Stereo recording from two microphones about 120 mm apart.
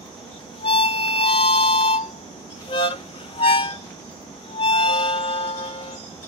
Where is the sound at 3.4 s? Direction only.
45° left (ahead or behind).